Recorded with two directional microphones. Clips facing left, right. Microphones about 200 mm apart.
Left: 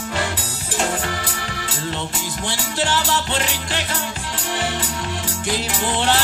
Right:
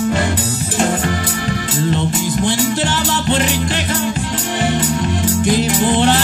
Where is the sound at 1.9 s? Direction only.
20° right (ahead or behind).